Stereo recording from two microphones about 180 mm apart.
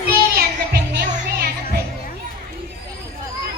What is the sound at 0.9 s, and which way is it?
Music, 55° right (ahead or behind).